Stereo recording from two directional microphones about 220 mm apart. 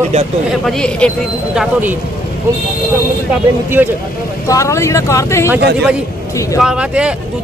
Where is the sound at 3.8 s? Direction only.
5° right (ahead or behind).